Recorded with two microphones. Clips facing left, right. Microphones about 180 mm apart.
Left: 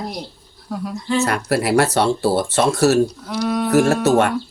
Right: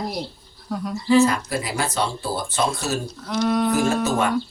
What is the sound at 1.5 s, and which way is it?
Speech, 70° left (ahead or behind).